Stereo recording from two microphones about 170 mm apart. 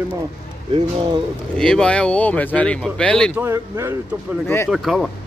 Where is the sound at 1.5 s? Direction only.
5° left (ahead or behind).